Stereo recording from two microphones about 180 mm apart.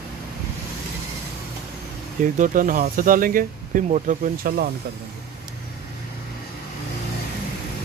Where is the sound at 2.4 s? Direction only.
50° right (ahead or behind).